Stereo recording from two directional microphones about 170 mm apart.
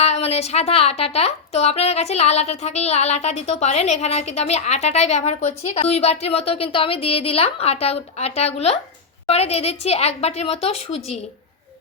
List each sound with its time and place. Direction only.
0.0 s speech: 40° left (ahead or behind)